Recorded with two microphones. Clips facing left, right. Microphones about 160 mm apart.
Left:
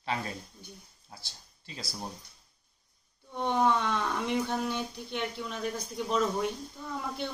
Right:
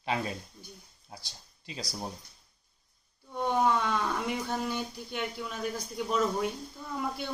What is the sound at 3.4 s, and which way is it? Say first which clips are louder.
Speech: even; 5° right (ahead or behind).